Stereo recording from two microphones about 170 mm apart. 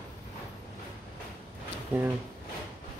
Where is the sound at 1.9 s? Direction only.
10° right (ahead or behind).